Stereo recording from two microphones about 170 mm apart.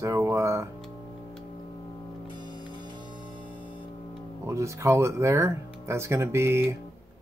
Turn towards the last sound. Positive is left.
turn(degrees=-15)  # may be behind; listen again after turning